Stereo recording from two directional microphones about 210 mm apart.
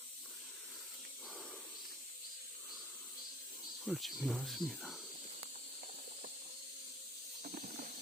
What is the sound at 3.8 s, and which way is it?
Speech, centre (ahead or behind).